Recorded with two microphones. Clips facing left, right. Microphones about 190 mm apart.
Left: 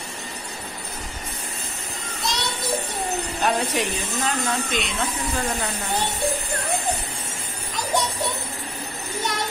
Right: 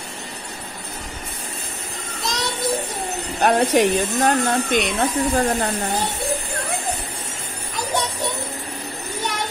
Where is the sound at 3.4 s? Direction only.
55° right (ahead or behind).